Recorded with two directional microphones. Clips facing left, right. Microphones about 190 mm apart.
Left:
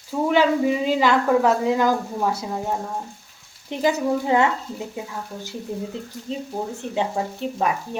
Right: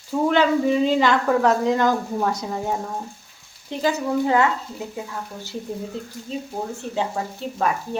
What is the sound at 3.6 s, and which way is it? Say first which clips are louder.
Speech: left 2 dB; 15° left (ahead or behind).